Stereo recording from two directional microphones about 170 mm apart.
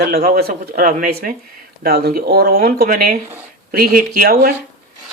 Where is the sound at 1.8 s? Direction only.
65° right (ahead or behind).